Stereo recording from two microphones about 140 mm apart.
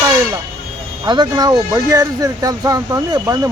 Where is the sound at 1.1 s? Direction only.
30° right (ahead or behind).